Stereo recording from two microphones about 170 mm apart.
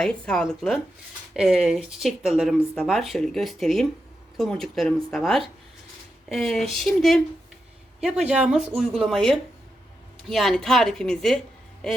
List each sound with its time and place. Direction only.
0.0 s speech: 5° left (ahead or behind)